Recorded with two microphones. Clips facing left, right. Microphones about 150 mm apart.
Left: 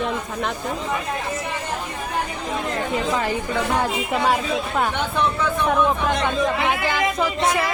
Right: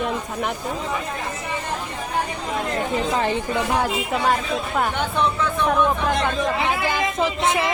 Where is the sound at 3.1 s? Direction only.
25° right (ahead or behind).